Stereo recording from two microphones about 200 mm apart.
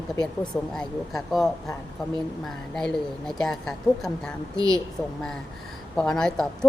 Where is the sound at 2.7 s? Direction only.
5° left (ahead or behind).